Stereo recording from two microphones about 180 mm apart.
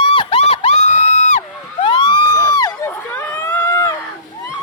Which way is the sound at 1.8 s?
25° left (ahead or behind).